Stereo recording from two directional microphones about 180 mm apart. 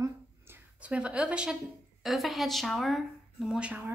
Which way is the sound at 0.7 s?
5° right (ahead or behind).